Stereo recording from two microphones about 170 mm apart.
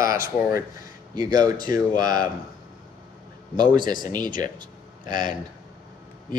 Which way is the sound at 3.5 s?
25° right (ahead or behind).